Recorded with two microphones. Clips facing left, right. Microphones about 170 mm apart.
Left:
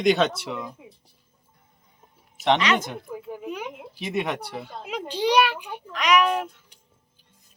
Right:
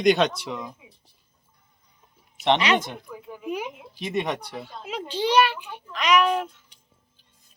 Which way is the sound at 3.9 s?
5° left (ahead or behind).